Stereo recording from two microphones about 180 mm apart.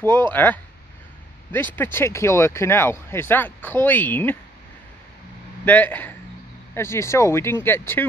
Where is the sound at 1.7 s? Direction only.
10° left (ahead or behind).